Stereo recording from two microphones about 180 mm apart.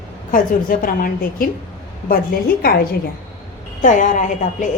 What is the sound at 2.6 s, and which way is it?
Speech, 55° left (ahead or behind).